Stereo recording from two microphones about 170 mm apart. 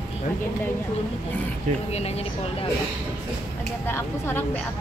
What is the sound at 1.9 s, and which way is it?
Speech, 40° left (ahead or behind).